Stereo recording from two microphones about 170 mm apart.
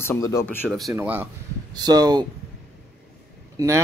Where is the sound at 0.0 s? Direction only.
15° left (ahead or behind).